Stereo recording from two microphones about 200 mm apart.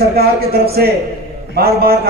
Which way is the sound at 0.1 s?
50° right (ahead or behind).